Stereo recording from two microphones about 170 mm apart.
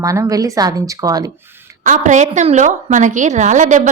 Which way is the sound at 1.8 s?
45° right (ahead or behind).